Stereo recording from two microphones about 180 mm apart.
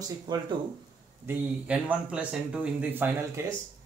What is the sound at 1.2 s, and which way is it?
Speech, 5° right (ahead or behind).